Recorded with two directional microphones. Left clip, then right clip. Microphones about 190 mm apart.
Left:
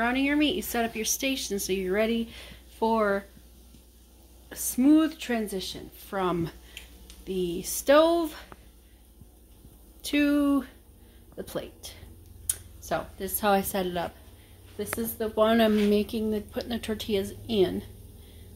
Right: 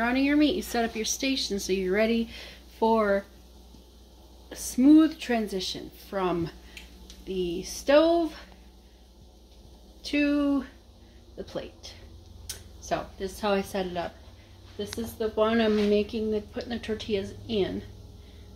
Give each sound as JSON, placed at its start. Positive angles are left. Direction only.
{"t": 0.0, "sound": "speech", "side_deg": -5}
{"t": 4.5, "sound": "speech", "side_deg": 5}
{"t": 6.1, "sound": "speech", "side_deg": 20}
{"t": 10.0, "sound": "speech", "side_deg": 30}
{"t": 12.4, "sound": "a sound", "side_deg": 25}
{"t": 13.4, "sound": "speech", "side_deg": 40}